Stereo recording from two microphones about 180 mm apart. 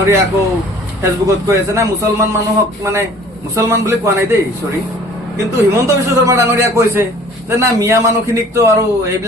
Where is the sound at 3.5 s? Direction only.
15° right (ahead or behind).